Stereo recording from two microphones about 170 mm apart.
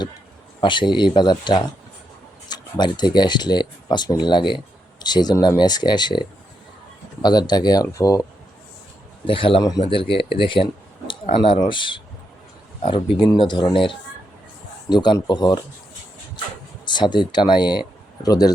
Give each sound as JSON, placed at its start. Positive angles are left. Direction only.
{"t": 0.6, "sound": "speech", "side_deg": 30}
{"t": 9.2, "sound": "a man's voice", "side_deg": 30}
{"t": 16.8, "sound": "speech", "side_deg": 25}